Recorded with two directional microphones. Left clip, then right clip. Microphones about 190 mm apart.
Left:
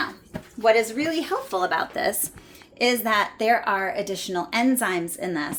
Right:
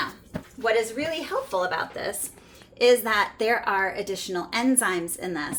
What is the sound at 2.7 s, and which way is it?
Speech, 15° left (ahead or behind).